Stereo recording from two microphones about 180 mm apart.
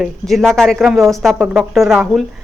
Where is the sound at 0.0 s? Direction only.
Centre (ahead or behind).